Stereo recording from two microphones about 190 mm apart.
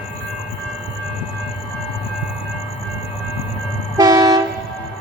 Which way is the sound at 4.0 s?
20° right (ahead or behind).